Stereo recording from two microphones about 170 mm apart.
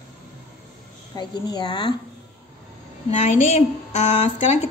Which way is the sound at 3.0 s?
40° left (ahead or behind).